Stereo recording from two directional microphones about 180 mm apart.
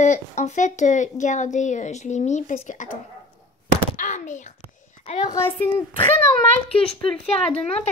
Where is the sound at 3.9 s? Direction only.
45° left (ahead or behind).